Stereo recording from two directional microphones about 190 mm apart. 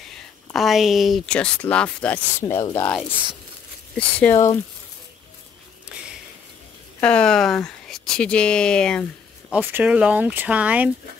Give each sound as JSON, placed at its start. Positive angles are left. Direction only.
{"t": 0.1, "sound": "speech", "side_deg": 0}
{"t": 2.5, "sound": "speech", "side_deg": 20}
{"t": 3.9, "sound": "speech", "side_deg": 10}
{"t": 7.0, "sound": "speech", "side_deg": 5}
{"t": 9.5, "sound": "speech", "side_deg": -10}